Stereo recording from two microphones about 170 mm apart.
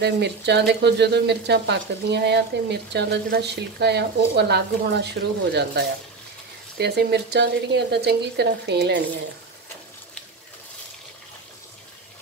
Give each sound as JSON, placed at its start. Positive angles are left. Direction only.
{"t": 0.0, "sound": "a woman's voice", "side_deg": -80}